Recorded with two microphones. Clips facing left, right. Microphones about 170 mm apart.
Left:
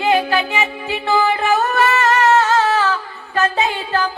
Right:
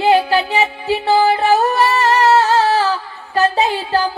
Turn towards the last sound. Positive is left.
turn(degrees=-35)  # may be behind; listen again after turning